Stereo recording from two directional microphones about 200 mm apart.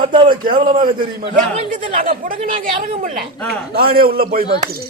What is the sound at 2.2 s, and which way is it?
Speech, 45° right (ahead or behind).